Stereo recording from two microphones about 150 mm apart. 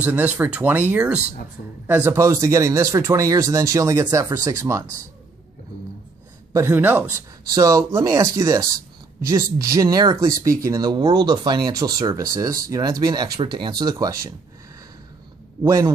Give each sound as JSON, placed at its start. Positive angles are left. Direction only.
{"t": 0.0, "sound": "speech", "side_deg": -10}
{"t": 6.5, "sound": "speech", "side_deg": -15}
{"t": 7.4, "sound": "speech", "side_deg": -25}
{"t": 15.6, "sound": "speech", "side_deg": -20}